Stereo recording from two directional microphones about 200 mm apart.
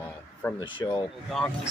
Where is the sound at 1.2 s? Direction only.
Centre (ahead or behind).